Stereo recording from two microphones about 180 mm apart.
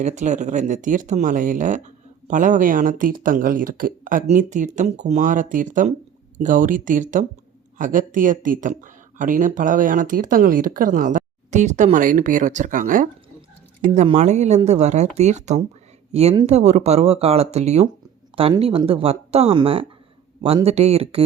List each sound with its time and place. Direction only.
0.0 s speech: 40° right (ahead or behind)